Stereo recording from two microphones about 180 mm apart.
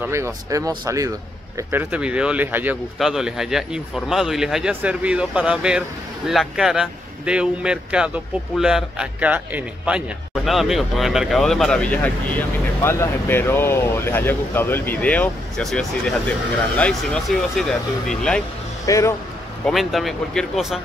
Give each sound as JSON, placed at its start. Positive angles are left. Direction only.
{"t": 0.0, "sound": "speech", "side_deg": -15}
{"t": 18.9, "sound": "speech", "side_deg": 15}
{"t": 19.6, "sound": "speech", "side_deg": 0}